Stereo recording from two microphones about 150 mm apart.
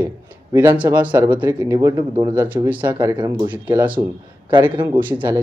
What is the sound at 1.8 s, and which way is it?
Speech, 25° right (ahead or behind).